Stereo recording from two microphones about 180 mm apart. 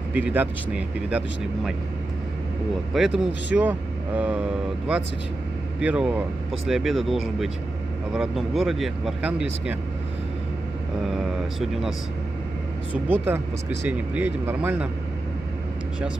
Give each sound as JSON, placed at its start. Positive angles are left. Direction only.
{"t": 0.1, "sound": "speech", "side_deg": -10}
{"t": 2.9, "sound": "speech", "side_deg": 0}
{"t": 11.1, "sound": "speech", "side_deg": 0}
{"t": 12.9, "sound": "speech", "side_deg": -10}